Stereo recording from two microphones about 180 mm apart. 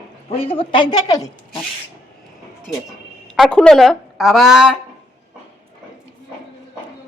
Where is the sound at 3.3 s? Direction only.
5° left (ahead or behind).